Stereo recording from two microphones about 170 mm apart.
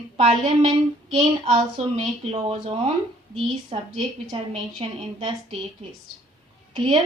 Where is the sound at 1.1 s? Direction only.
35° right (ahead or behind).